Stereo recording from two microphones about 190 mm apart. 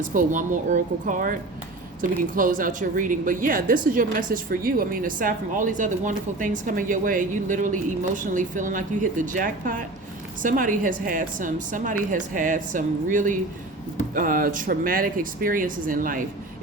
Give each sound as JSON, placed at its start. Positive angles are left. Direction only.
{"t": 0.0, "sound": "speech", "side_deg": -45}